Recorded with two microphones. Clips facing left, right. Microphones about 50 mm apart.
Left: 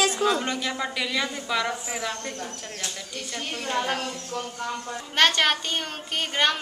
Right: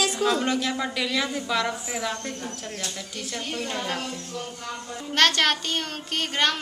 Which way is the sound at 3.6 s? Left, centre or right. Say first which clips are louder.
Left 4 dB; centre.